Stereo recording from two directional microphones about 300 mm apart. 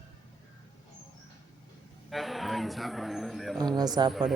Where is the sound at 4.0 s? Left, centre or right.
Centre.